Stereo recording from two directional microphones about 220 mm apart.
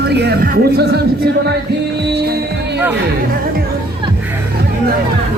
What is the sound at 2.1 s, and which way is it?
Music, 50° right (ahead or behind).